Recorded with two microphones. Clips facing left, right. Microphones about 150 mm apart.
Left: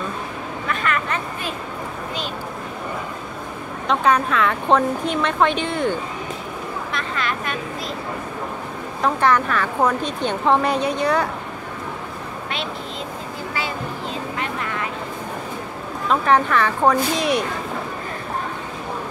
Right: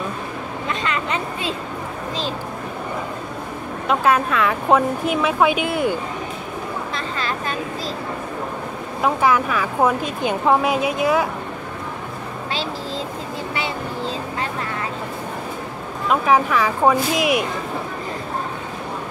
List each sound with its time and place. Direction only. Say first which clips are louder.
0.7 s vehicle: left 1 dB; 20° right (ahead or behind)
3.8 s a woman's voice: even; 5° right (ahead or behind)
6.9 s vehicle: even; 30° right (ahead or behind)
9.0 s a woman's voice: even; 5° right (ahead or behind)
16.1 s a woman's voice: even; 5° right (ahead or behind)